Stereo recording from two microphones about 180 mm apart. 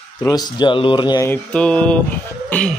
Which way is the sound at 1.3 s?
5° left (ahead or behind).